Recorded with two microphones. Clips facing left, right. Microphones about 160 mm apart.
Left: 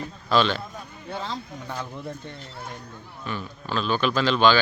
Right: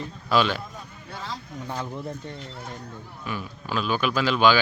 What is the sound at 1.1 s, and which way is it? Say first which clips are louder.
Vehicle: left 4 dB; 25° left (ahead or behind).